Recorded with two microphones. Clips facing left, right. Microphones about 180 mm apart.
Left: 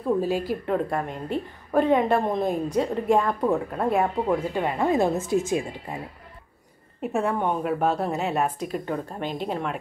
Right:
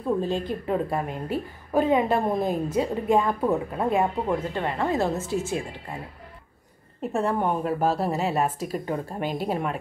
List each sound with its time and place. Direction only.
0.2 s a woman's voice: 5° left (ahead or behind)
4.4 s speech: 10° left (ahead or behind)
7.0 s a woman's voice: centre (ahead or behind)